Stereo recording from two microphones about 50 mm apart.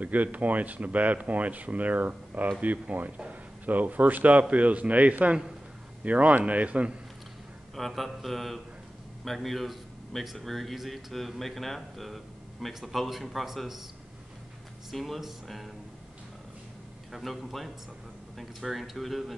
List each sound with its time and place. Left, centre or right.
0.0 s a man's voice: right
7.7 s speech: centre
14.9 s speech: centre
17.1 s speech: centre